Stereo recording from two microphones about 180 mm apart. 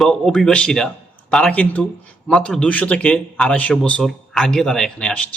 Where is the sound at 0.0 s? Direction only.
Centre (ahead or behind).